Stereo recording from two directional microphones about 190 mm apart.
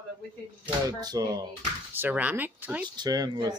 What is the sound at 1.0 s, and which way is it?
Speech, 20° right (ahead or behind).